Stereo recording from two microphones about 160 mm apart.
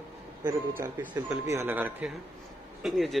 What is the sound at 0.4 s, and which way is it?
Speech, 25° right (ahead or behind).